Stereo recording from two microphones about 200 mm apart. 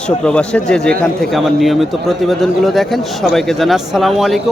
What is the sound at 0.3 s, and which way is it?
A man's voice, 5° left (ahead or behind).